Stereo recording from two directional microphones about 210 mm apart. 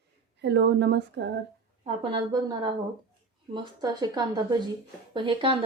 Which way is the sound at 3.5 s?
20° right (ahead or behind).